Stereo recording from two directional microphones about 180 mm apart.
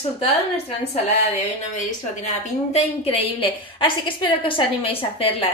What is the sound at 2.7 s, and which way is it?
A woman's voice, 30° left (ahead or behind).